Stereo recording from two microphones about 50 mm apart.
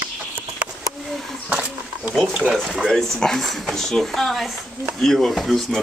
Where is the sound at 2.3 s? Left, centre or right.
Centre.